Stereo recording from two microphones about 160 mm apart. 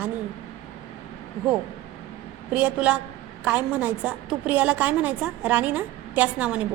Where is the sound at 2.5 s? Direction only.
10° right (ahead or behind).